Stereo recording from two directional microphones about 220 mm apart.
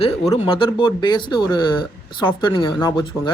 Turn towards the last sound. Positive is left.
turn(degrees=20)  # may be behind; listen again after turning